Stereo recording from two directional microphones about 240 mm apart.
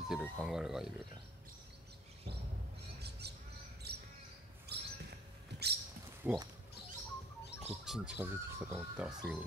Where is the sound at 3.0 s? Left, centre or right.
Right.